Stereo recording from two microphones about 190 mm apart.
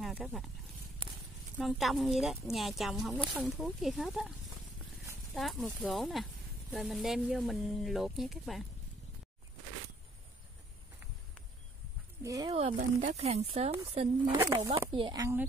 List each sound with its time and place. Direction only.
0.0 s speech: 5° right (ahead or behind)
1.0 s a sound: 25° right (ahead or behind)
1.6 s speech: centre (ahead or behind)
5.3 s speech: centre (ahead or behind)
12.2 s speech: 20° right (ahead or behind)
12.7 s speech: 40° right (ahead or behind)
15.0 s speech: 20° right (ahead or behind)